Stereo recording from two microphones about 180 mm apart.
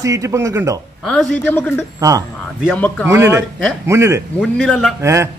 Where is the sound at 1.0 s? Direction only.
Centre (ahead or behind).